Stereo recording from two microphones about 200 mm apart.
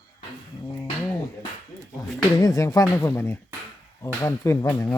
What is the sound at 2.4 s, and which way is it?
Speech, 15° left (ahead or behind).